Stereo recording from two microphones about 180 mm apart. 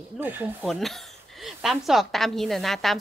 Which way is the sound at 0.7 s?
Centre (ahead or behind).